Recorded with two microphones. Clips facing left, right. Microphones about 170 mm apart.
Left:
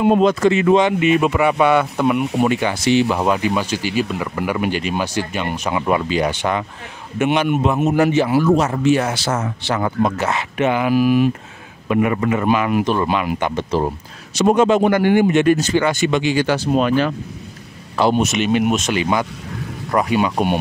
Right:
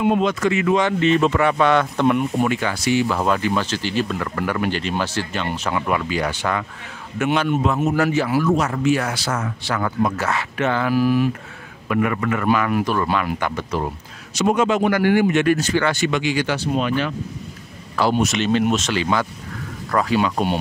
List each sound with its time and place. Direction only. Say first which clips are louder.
0.0 s speech: left 5 dB; 35° left (ahead or behind); by 2.2 s 10° left (ahead or behind)
2.3 s a man's voice: left 3 dB; 20° left (ahead or behind)
16.4 s speech: left 5 dB; 45° left (ahead or behind)
17.9 s speech: left 3 dB; 20° left (ahead or behind)